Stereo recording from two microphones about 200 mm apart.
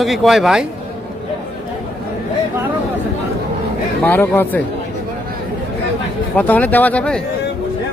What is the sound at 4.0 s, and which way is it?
Speech, 10° left (ahead or behind).